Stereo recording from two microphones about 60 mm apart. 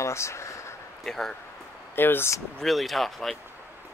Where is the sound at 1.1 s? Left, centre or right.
Centre.